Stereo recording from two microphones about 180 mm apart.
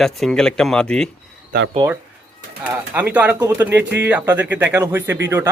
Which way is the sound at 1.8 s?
20° right (ahead or behind).